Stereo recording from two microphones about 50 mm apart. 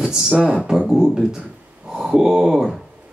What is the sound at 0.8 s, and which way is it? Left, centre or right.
Speech, centre.